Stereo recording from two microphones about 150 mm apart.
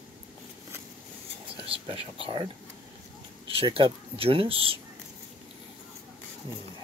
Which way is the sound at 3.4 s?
35° right (ahead or behind).